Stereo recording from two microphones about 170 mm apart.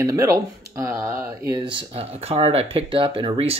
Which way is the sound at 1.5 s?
25° right (ahead or behind).